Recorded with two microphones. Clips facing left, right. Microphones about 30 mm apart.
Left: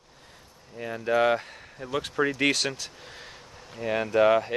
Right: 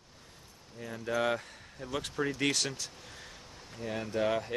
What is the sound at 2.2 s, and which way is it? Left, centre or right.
Speech, left.